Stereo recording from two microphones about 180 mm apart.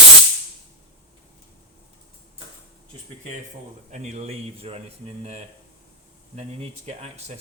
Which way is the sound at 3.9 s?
40° right (ahead or behind).